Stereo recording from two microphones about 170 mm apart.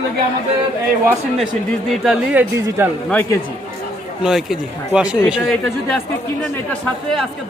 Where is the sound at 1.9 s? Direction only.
5° right (ahead or behind).